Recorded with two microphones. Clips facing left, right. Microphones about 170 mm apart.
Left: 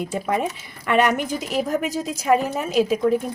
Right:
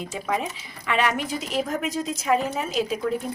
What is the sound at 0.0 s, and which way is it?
Speech, 55° left (ahead or behind).